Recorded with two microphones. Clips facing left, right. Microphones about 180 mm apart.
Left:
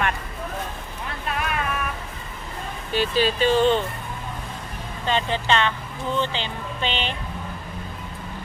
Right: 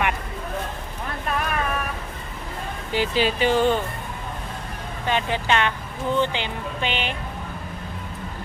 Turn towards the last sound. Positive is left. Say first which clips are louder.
# right 1 dB
turn(degrees=-10)  # may be behind; listen again after turning